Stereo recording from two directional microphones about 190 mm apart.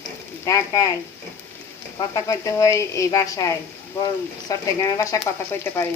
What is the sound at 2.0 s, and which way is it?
A woman's voice, 15° left (ahead or behind).